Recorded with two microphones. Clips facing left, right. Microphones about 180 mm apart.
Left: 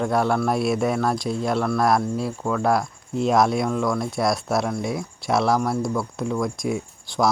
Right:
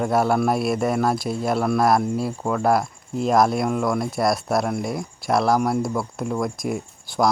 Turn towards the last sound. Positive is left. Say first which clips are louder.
# right 1 dB
turn(degrees=0)  # may be behind; listen again after turning